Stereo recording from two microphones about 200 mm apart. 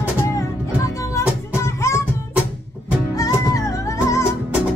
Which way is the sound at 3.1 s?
15° left (ahead or behind).